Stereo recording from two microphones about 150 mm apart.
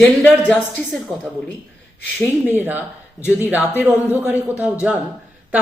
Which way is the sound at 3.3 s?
10° right (ahead or behind).